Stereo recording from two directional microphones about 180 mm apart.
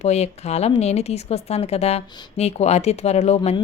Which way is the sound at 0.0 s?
35° left (ahead or behind).